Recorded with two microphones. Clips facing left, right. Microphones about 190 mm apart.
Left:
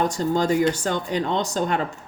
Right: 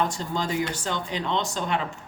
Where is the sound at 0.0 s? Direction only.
45° left (ahead or behind).